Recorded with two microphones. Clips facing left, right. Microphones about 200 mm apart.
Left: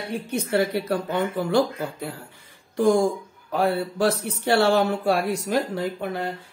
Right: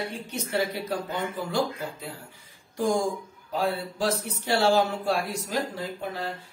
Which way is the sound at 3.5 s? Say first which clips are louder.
Left 5 dB; 60° left (ahead or behind).